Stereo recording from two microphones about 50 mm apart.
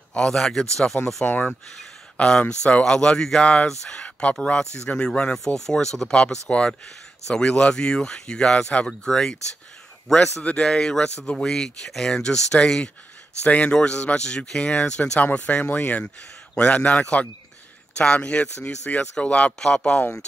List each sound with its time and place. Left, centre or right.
0.1 s speech: centre
1.2 s speech: left
2.1 s speech: left
6.5 s speech: left
10.4 s speech: centre